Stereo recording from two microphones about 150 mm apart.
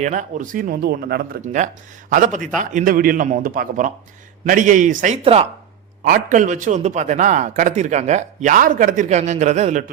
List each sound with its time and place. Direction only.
0.0 s speech: 55° right (ahead or behind); by 1.4 s 90° right
1.4 s speech: 55° right (ahead or behind)
5.2 s speech: 40° right (ahead or behind)
6.1 s a man's voice: 60° right (ahead or behind)